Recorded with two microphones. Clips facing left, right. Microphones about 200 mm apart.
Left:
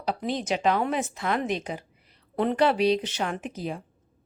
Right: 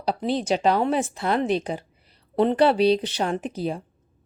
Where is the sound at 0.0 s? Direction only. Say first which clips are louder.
Right 4 dB; 35° right (ahead or behind).